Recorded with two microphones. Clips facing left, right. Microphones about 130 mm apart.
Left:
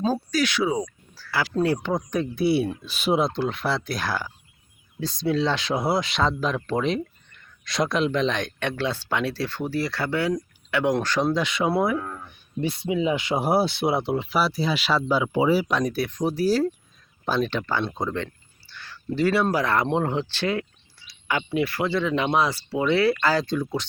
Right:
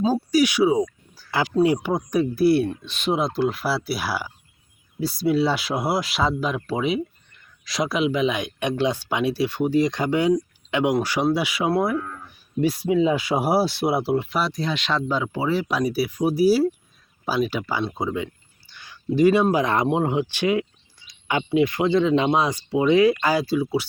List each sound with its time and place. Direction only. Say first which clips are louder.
0.0 s speech: right 4 dB; 10° right (ahead or behind); by 15.6 s 15° left (ahead or behind)
15.6 s speech: right 2 dB; 5° right (ahead or behind)